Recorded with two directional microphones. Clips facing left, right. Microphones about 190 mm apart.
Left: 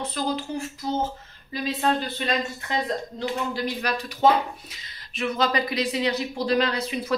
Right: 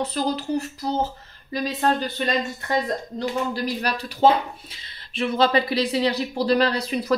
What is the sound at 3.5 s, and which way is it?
Speech, 35° right (ahead or behind).